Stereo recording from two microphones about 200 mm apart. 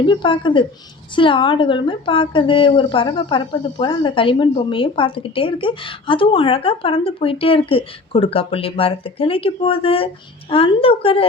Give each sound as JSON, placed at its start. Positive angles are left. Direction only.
{"t": 0.0, "sound": "a woman's voice", "side_deg": 25}